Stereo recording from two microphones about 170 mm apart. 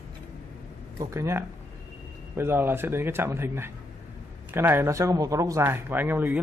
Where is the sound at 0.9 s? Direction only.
15° right (ahead or behind).